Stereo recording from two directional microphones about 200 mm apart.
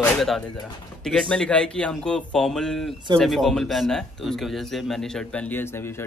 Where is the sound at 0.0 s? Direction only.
Centre (ahead or behind).